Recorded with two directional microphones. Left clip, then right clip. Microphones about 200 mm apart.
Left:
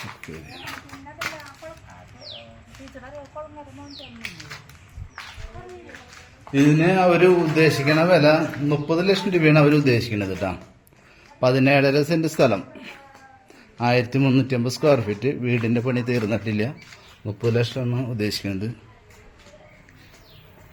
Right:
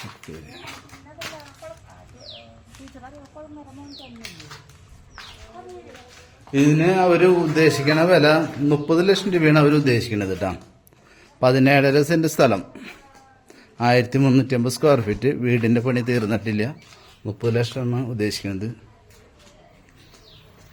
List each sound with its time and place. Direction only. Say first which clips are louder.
0.3 s speech: left 1 dB; centre (ahead or behind)
3.3 s speech: left 5 dB; 30° left (ahead or behind)
6.5 s a man's voice: even; 5° right (ahead or behind)